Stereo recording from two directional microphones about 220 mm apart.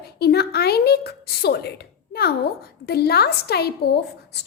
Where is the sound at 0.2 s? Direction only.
45° left (ahead or behind).